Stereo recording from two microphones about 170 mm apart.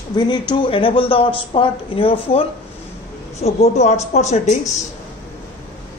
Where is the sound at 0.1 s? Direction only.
25° left (ahead or behind); by 4.4 s 40° left (ahead or behind).